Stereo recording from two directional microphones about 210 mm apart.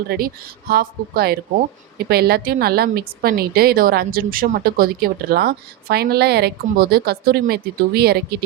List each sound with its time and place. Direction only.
0.1 s a woman's voice: 45° right (ahead or behind)